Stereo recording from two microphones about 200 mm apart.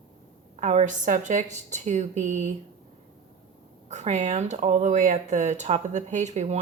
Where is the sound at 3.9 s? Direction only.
35° right (ahead or behind).